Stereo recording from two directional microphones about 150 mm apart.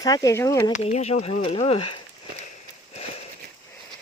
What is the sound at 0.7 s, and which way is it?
Speech, 50° left (ahead or behind).